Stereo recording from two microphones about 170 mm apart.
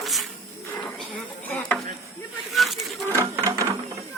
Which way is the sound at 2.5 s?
Centre (ahead or behind).